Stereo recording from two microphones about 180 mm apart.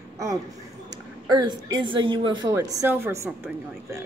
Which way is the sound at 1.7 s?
25° right (ahead or behind).